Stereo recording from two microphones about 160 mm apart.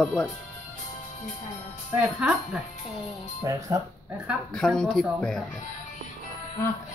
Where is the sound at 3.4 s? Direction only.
20° right (ahead or behind).